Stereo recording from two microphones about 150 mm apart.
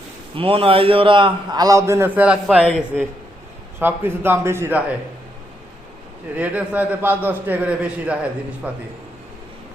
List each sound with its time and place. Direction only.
0.3 s a man's voice: 35° right (ahead or behind); by 2.6 s 5° right (ahead or behind)
3.8 s a man's voice: 15° right (ahead or behind)
6.3 s a man's voice: 10° right (ahead or behind)